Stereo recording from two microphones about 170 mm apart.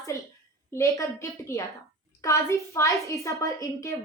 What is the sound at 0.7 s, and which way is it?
A woman's voice, 20° left (ahead or behind).